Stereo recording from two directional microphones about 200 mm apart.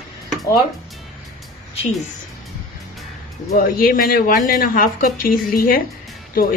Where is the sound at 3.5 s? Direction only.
45° left (ahead or behind).